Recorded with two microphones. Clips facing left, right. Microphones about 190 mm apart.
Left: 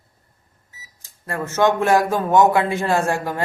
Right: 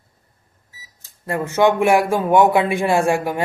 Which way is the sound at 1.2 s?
20° right (ahead or behind).